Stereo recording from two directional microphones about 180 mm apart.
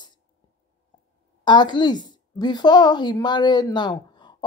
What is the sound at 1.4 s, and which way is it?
Speech, 25° left (ahead or behind).